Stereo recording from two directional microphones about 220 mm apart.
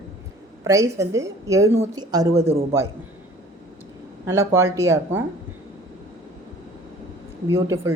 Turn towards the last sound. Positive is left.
turn(degrees=-10)  # may be behind; listen again after turning